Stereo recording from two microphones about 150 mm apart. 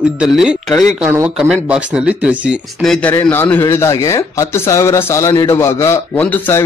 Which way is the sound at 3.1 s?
15° left (ahead or behind).